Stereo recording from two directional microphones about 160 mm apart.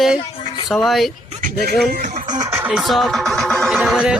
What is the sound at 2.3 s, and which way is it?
Music, 25° right (ahead or behind).